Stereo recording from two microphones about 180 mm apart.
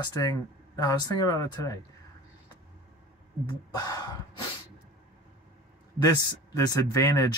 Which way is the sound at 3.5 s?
20° left (ahead or behind).